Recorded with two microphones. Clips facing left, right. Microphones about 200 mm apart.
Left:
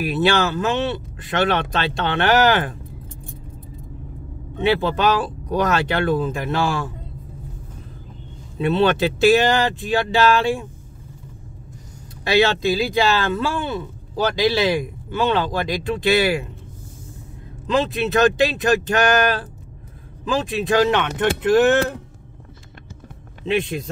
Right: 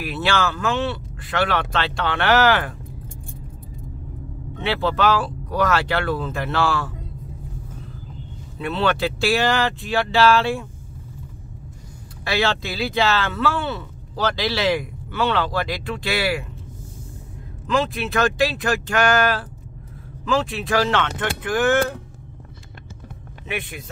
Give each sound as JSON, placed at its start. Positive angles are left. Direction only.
{"t": 0.0, "sound": "speech", "side_deg": 20}
{"t": 4.6, "sound": "speech", "side_deg": 15}
{"t": 8.5, "sound": "speech", "side_deg": 20}
{"t": 12.3, "sound": "speech", "side_deg": 20}
{"t": 17.7, "sound": "speech", "side_deg": 20}
{"t": 20.4, "sound": "speech", "side_deg": 20}